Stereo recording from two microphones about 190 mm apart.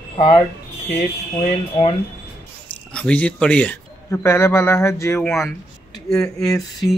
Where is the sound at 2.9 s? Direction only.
5° left (ahead or behind).